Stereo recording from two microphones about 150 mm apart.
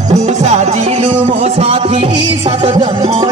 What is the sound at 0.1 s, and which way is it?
Music, 45° right (ahead or behind).